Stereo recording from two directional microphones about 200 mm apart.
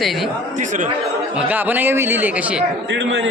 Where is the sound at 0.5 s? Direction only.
40° right (ahead or behind).